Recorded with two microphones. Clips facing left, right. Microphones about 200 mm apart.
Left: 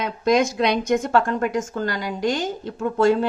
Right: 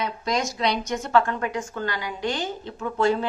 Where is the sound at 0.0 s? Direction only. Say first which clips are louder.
Left 7 dB; 55° left (ahead or behind).